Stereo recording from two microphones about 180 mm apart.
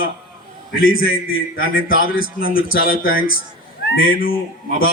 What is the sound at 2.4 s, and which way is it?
Speech, 55° left (ahead or behind).